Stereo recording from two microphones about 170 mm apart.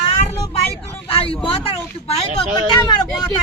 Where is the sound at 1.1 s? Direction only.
35° left (ahead or behind).